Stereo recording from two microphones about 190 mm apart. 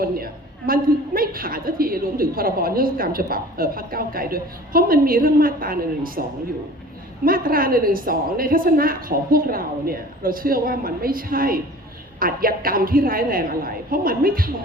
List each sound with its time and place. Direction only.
0.7 s a woman's voice: 50° right (ahead or behind)
7.3 s a woman's voice: 50° right (ahead or behind)